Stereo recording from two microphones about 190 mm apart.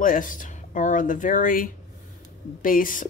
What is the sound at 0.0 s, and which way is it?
A woman's voice, 45° left (ahead or behind).